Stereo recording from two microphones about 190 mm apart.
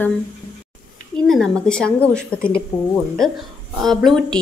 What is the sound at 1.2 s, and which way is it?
A woman's voice, centre (ahead or behind).